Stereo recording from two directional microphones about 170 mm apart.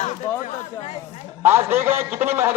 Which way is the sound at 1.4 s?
15° right (ahead or behind).